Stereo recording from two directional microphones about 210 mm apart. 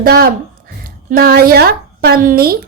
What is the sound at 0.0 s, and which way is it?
A woman's voice, 45° right (ahead or behind).